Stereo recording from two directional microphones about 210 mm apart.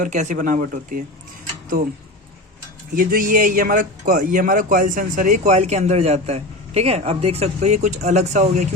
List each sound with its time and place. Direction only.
0.0 s speech: 35° right (ahead or behind)
2.9 s speech: 40° right (ahead or behind)